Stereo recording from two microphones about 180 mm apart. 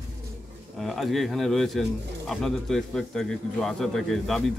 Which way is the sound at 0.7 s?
Centre (ahead or behind).